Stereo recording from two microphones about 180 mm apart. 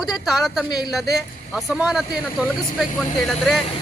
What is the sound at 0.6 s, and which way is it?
Speech, 25° left (ahead or behind).